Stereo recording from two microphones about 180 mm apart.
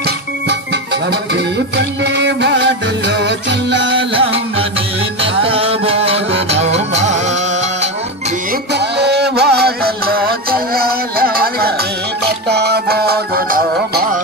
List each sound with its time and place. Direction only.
2.1 s music: 75° right (ahead or behind)
4.1 s music: 30° right (ahead or behind)
8.7 s music: 65° right (ahead or behind)